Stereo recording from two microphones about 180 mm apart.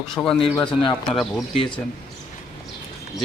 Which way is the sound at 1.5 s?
30° left (ahead or behind).